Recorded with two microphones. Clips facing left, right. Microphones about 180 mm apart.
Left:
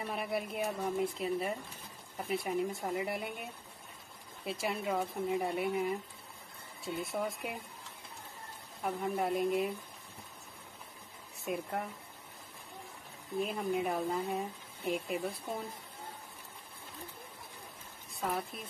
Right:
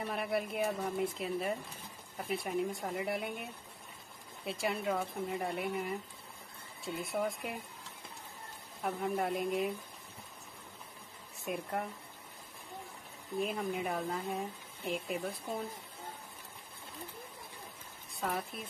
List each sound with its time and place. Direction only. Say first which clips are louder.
0.0 s speech: right 1 dB; centre (ahead or behind)
4.5 s speech: even; centre (ahead or behind)
8.8 s speech: even; centre (ahead or behind)
11.4 s speech: left 1 dB; centre (ahead or behind)
13.4 s speech: left 2 dB; centre (ahead or behind)
18.1 s speech: left 1 dB; centre (ahead or behind)